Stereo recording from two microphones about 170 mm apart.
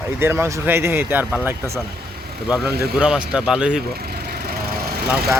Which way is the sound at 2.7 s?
65° right (ahead or behind).